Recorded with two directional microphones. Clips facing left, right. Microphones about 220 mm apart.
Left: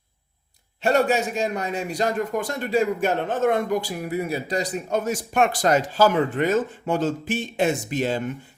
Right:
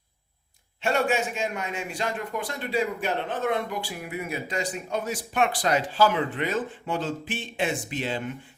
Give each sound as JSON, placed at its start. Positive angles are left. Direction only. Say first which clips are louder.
{"t": 0.8, "sound": "a man's voice", "louder": "left 5 dB", "side_deg": 40}